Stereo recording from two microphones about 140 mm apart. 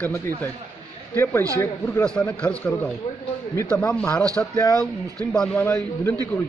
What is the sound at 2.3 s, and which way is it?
Speech, 10° left (ahead or behind).